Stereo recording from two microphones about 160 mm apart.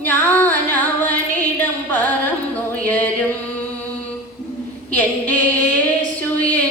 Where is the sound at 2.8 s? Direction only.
10° left (ahead or behind).